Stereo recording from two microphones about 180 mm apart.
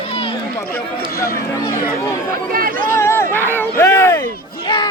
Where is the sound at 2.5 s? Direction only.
55° right (ahead or behind).